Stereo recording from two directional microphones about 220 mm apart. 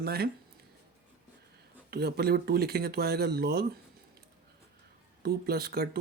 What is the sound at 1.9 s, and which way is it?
Speech, 45° right (ahead or behind).